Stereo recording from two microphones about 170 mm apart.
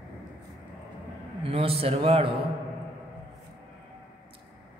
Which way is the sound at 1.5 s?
35° right (ahead or behind).